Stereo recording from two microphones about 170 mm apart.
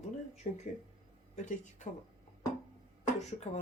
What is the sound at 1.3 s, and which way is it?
Speech, 45° left (ahead or behind).